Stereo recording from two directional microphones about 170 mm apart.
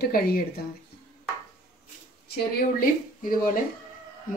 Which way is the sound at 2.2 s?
70° left (ahead or behind).